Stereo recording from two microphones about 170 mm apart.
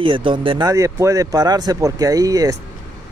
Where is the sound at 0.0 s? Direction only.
30° right (ahead or behind).